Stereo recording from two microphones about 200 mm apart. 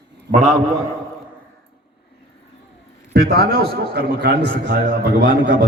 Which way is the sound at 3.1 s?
55° right (ahead or behind).